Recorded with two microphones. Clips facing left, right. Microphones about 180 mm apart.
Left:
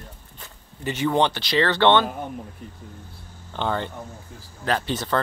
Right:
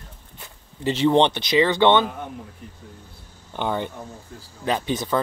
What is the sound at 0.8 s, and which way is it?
Speech, 25° right (ahead or behind).